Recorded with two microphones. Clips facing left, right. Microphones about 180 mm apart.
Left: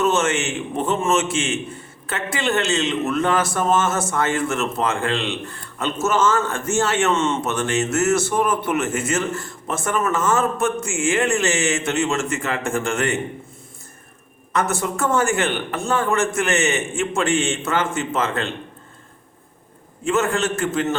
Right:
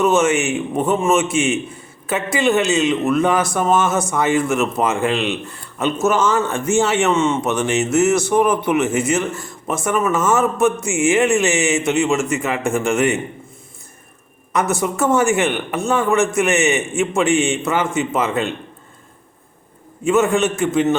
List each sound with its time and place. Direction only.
0.0 s a man's voice: 15° right (ahead or behind)
14.5 s a man's voice: 20° right (ahead or behind)
20.1 s a man's voice: 15° right (ahead or behind)